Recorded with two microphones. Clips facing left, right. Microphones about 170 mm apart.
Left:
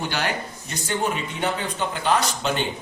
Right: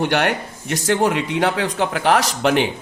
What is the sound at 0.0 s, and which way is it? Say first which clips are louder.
Speech: right 7 dB; 65° right (ahead or behind).